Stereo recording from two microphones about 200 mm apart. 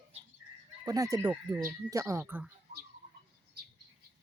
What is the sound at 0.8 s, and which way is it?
Speech, 15° right (ahead or behind).